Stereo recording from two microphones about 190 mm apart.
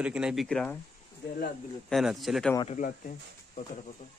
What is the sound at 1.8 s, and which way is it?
Speech, centre (ahead or behind).